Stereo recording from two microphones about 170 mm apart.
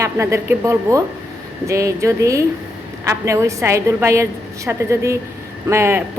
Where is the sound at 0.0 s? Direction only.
15° right (ahead or behind).